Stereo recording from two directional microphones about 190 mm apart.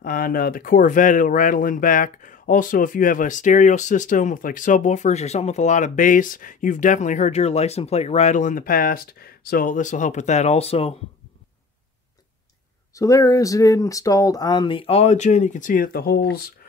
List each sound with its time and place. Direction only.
0.0 s speech: 50° left (ahead or behind); by 11.0 s 30° left (ahead or behind)
12.9 s speech: 15° left (ahead or behind); by 16.4 s 55° left (ahead or behind)